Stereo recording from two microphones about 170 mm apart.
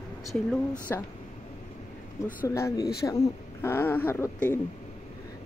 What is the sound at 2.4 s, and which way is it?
A woman's voice, 20° left (ahead or behind).